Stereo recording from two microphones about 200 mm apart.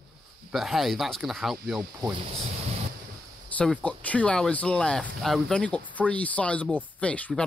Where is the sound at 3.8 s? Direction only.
5° left (ahead or behind).